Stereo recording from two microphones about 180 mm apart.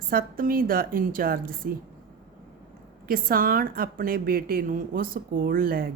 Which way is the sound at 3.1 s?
55° right (ahead or behind).